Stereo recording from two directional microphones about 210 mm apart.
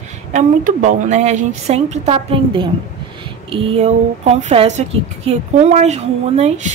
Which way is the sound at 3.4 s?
25° right (ahead or behind).